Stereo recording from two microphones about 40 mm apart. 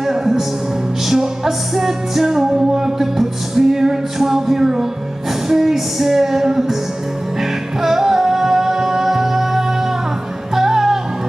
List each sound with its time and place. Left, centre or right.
0.0 s music: centre
7.8 s music: centre